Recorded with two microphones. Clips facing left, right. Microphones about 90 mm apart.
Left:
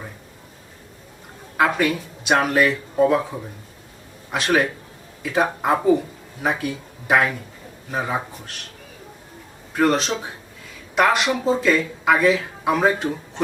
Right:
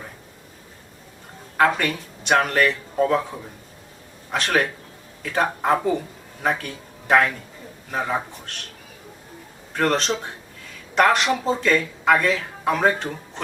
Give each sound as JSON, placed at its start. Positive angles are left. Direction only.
{"t": 1.5, "sound": "speech", "side_deg": 5}
{"t": 4.3, "sound": "speech", "side_deg": 5}
{"t": 9.7, "sound": "speech", "side_deg": 5}